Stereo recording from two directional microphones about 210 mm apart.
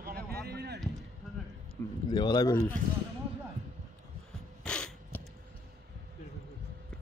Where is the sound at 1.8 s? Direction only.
10° left (ahead or behind).